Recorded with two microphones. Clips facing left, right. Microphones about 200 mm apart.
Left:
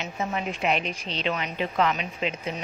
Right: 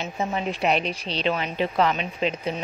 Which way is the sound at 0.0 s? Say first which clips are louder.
Right 3 dB; 30° right (ahead or behind).